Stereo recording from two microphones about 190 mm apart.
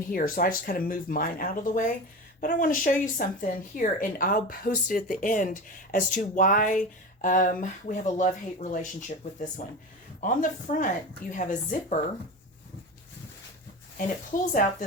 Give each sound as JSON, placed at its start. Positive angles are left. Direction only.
{"t": 0.1, "sound": "speech", "side_deg": 45}
{"t": 14.3, "sound": "speech", "side_deg": 45}